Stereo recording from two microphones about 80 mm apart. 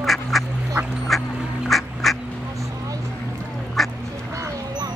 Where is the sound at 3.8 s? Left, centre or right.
Centre.